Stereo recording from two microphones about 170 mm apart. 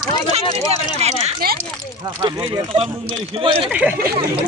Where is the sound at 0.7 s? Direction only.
40° right (ahead or behind).